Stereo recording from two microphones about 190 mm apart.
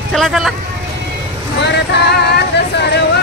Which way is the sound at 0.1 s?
Centre (ahead or behind).